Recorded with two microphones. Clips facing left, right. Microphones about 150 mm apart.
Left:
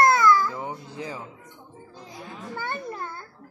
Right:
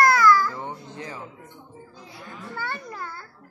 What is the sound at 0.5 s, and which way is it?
Speech, 10° left (ahead or behind).